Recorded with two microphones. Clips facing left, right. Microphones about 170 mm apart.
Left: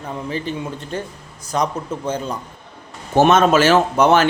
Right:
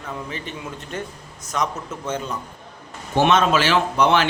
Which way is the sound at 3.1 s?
45° left (ahead or behind).